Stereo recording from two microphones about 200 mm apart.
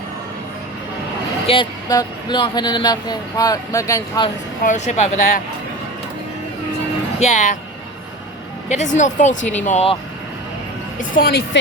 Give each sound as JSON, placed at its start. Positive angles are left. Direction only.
{"t": 1.5, "sound": "speech", "side_deg": 20}
{"t": 4.6, "sound": "speech", "side_deg": 35}
{"t": 7.2, "sound": "speech", "side_deg": 35}
{"t": 8.7, "sound": "speech", "side_deg": 35}
{"t": 11.1, "sound": "speech", "side_deg": 50}